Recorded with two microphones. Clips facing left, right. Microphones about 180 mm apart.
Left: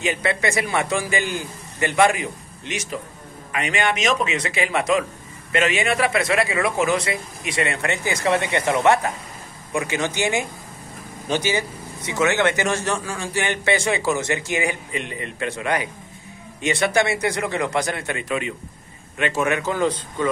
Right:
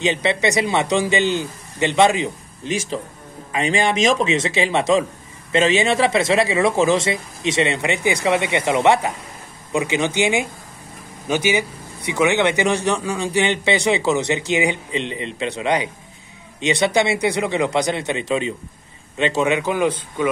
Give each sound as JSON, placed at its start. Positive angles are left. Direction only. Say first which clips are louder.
{"t": 0.0, "sound": "a man's voice", "louder": "right 3 dB", "side_deg": -20}
{"t": 3.5, "sound": "a man's voice", "louder": "right 4 dB", "side_deg": -30}